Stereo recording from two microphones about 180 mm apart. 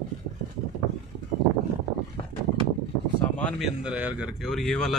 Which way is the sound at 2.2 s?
30° left (ahead or behind).